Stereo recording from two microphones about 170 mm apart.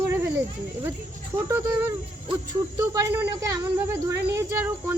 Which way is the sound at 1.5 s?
15° right (ahead or behind).